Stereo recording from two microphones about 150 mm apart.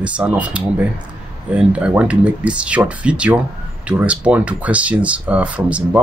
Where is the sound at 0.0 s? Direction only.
10° right (ahead or behind).